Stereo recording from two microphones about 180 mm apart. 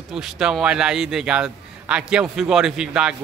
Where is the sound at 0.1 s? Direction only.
5° right (ahead or behind).